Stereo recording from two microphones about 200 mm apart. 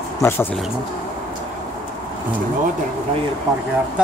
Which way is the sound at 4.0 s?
5° right (ahead or behind).